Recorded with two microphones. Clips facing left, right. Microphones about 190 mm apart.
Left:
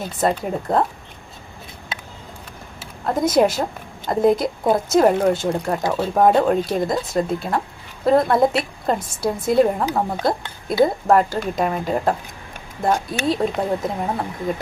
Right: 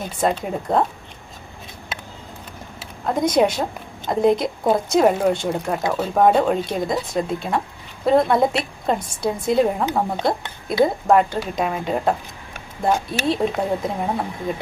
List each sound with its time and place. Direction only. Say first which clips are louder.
0.2 s speech: left 1 dB; centre (ahead or behind)
3.1 s speech: left 1 dB; 5° left (ahead or behind)